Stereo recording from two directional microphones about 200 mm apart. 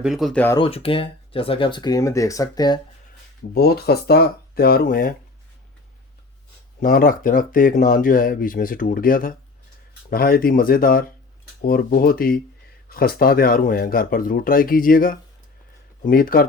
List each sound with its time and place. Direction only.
0.0 s speech: centre (ahead or behind)
0.5 s speech: 25° left (ahead or behind)
3.5 s speech: 50° left (ahead or behind)
6.7 s speech: 45° left (ahead or behind)